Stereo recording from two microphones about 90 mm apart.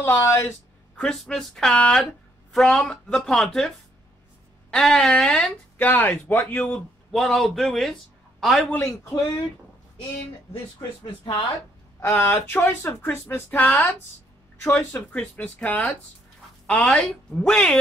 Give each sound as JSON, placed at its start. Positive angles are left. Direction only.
{"t": 0.0, "sound": "speech", "side_deg": 30}
{"t": 0.9, "sound": "speech", "side_deg": 5}
{"t": 5.8, "sound": "speech", "side_deg": 20}
{"t": 7.1, "sound": "a man's voice", "side_deg": 5}
{"t": 8.8, "sound": "speech", "side_deg": 40}
{"t": 12.0, "sound": "speech", "side_deg": 25}